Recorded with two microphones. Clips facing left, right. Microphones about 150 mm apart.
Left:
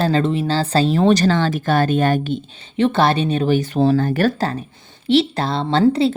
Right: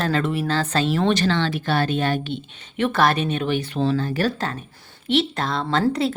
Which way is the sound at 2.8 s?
30° left (ahead or behind).